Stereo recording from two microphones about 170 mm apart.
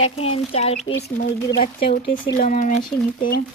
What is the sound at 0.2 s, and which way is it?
Speech, 35° left (ahead or behind).